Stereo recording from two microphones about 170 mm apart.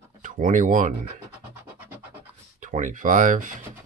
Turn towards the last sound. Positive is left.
turn(degrees=-50)  # may be behind; listen again after turning